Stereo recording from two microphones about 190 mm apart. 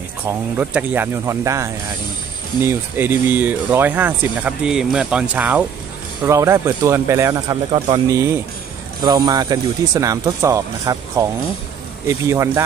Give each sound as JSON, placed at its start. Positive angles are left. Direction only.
{"t": 0.2, "sound": "speech", "side_deg": -10}